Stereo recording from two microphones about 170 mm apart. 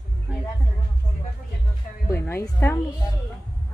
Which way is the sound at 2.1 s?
15° left (ahead or behind).